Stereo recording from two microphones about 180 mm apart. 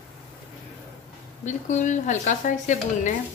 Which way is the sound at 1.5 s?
40° left (ahead or behind).